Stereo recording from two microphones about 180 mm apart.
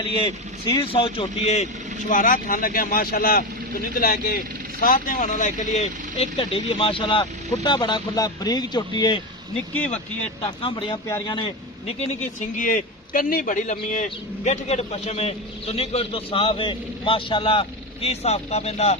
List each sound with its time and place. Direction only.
0.1 s a man's voice: 30° left (ahead or behind)
2.0 s speech: 50° left (ahead or behind); by 9.2 s 25° left (ahead or behind)
10.6 s a man's voice: 30° left (ahead or behind)